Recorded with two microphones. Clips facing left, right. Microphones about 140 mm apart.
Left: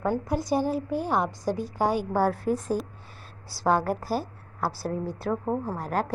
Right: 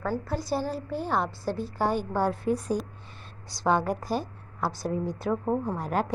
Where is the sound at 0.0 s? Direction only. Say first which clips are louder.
Left 3 dB; 20° left (ahead or behind).